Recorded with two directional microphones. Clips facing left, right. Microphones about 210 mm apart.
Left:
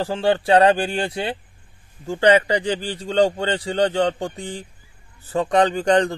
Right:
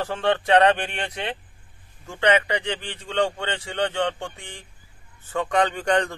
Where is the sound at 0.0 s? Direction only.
30° left (ahead or behind).